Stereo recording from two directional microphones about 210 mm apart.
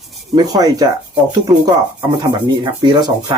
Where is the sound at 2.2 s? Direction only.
20° right (ahead or behind).